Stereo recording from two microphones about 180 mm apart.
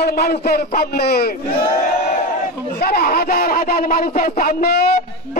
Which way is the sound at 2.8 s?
55° left (ahead or behind).